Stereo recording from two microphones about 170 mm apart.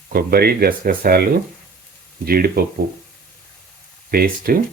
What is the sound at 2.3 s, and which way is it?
Speech, 60° right (ahead or behind).